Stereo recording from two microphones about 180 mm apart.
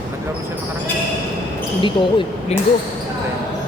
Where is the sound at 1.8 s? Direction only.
25° left (ahead or behind).